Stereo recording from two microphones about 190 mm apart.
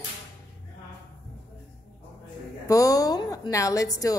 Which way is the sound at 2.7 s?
15° left (ahead or behind).